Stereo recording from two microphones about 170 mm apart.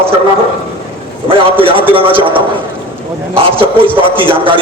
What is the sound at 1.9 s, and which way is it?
Speech, 30° right (ahead or behind).